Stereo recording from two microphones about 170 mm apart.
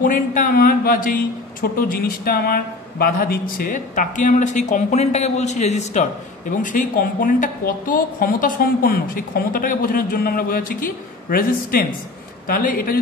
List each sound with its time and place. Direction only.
0.0 s speech: 55° left (ahead or behind)